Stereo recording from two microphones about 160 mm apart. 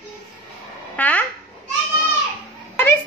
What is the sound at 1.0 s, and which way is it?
Speech, 10° left (ahead or behind).